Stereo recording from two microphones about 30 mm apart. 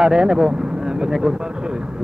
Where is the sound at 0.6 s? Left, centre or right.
Right.